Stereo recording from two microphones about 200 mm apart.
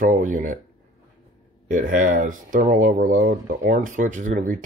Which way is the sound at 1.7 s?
40° right (ahead or behind).